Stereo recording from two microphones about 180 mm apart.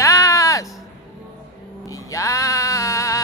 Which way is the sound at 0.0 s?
15° left (ahead or behind).